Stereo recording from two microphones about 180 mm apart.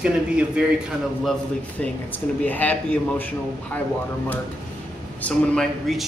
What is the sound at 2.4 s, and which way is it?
Speech, 10° left (ahead or behind).